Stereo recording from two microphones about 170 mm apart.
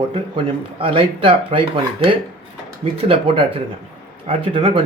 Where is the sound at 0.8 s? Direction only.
30° right (ahead or behind).